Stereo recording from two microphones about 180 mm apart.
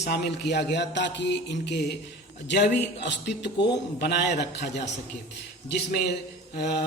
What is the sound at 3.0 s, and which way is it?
A man's voice, 75° left (ahead or behind).